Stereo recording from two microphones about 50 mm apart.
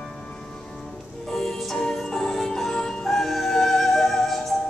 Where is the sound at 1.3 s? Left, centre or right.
Centre.